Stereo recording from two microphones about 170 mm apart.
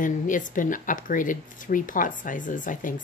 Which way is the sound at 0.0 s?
50° left (ahead or behind).